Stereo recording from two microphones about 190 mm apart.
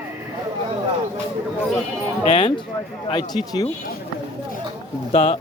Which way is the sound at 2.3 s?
25° left (ahead or behind).